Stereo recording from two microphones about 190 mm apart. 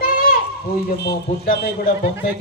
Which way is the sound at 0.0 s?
50° left (ahead or behind).